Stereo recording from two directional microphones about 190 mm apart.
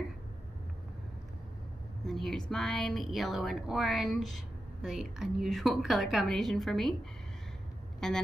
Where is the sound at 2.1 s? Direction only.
Centre (ahead or behind).